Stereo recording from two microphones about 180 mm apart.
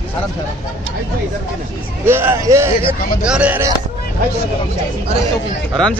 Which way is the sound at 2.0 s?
15° right (ahead or behind).